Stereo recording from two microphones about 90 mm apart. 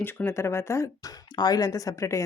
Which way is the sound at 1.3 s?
50° left (ahead or behind).